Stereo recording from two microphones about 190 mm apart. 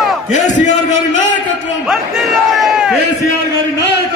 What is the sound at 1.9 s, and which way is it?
A man's voice, centre (ahead or behind).